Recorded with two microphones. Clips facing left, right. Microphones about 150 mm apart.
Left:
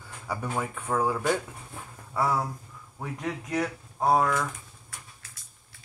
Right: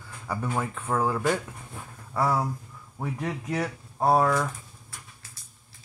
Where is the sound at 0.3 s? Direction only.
5° left (ahead or behind).